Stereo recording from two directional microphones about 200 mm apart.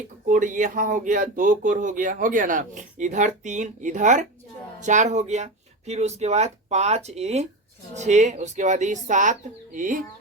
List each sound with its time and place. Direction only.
0.3 s speech: 40° right (ahead or behind)